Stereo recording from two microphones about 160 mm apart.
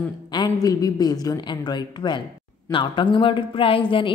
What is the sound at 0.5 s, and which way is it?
A woman's voice, 25° left (ahead or behind).